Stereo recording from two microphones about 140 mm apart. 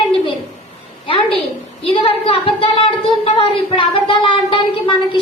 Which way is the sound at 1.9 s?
40° left (ahead or behind).